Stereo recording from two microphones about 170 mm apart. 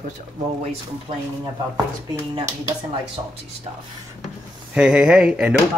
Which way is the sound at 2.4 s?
30° right (ahead or behind).